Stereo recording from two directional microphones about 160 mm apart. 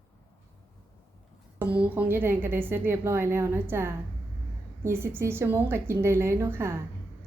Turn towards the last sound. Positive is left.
turn(degrees=-15)  # may be behind; listen again after turning